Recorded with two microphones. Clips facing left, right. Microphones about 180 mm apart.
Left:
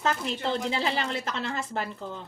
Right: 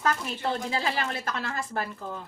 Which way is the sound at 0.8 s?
25° left (ahead or behind).